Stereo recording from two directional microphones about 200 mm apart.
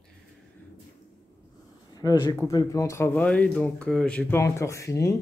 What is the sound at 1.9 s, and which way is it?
Speech, 20° left (ahead or behind).